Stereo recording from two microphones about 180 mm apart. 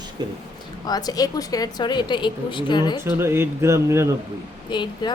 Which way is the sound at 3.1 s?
15° right (ahead or behind).